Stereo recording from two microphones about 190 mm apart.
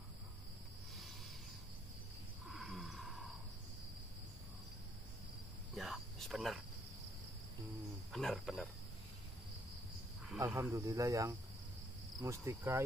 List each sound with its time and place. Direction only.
2.5 s a sound: centre (ahead or behind)
5.8 s cricket: centre (ahead or behind)
8.1 s cricket: centre (ahead or behind)
10.4 s speech: 15° right (ahead or behind)